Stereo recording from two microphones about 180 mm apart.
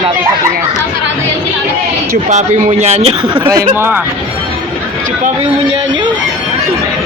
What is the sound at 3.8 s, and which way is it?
Speech, 10° right (ahead or behind).